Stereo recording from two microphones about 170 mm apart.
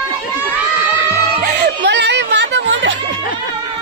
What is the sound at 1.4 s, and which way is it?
Music, 65° right (ahead or behind).